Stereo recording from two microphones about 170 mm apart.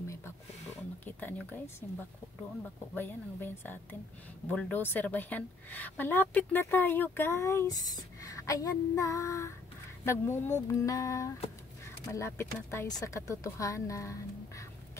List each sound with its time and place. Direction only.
1.0 s a woman's voice: 10° left (ahead or behind)